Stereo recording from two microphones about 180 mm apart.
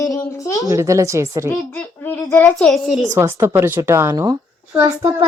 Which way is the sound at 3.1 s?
15° right (ahead or behind).